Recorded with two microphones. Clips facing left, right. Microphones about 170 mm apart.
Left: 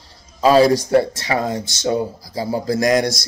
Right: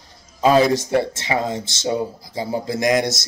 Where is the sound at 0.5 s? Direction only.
35° left (ahead or behind).